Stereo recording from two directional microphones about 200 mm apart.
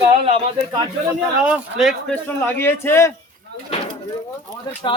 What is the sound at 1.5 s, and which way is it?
Speech, 5° right (ahead or behind).